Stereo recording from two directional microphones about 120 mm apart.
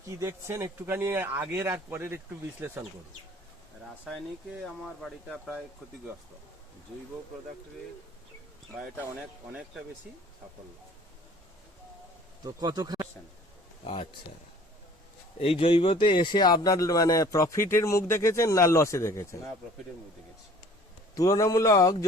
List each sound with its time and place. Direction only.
0.0 s speech: 25° right (ahead or behind)
4.6 s speech: 5° left (ahead or behind)
12.4 s speech: 35° right (ahead or behind)
13.8 s speech: 55° left (ahead or behind)
15.4 s a man's voice: 50° left (ahead or behind); by 19.4 s 25° left (ahead or behind)
21.2 s a man's voice: 30° left (ahead or behind)